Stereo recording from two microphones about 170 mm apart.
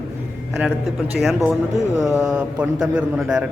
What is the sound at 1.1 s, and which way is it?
Speech, centre (ahead or behind).